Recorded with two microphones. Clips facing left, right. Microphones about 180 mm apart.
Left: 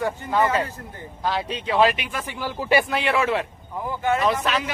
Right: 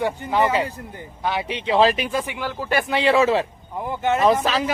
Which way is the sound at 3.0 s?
25° right (ahead or behind).